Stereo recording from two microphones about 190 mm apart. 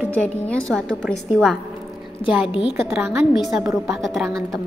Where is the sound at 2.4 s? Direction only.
25° left (ahead or behind).